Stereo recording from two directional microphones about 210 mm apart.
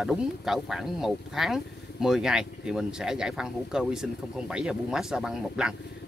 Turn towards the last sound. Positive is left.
turn(degrees=-5)  # may be behind; listen again after turning